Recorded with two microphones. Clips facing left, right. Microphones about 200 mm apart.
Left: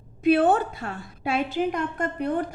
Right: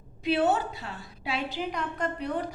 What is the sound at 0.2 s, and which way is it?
A woman's voice, 50° left (ahead or behind).